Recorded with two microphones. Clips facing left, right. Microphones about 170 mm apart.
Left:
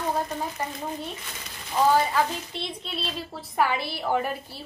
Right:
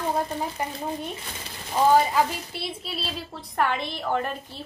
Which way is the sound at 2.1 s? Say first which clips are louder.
Right 1 dB; 5° right (ahead or behind).